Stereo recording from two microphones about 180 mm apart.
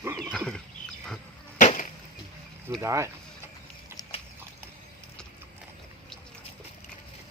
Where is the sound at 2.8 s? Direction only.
15° right (ahead or behind).